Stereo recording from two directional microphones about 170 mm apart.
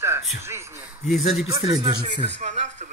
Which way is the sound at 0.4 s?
15° right (ahead or behind).